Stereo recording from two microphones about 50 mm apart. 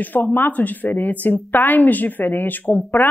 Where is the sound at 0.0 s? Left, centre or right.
Left.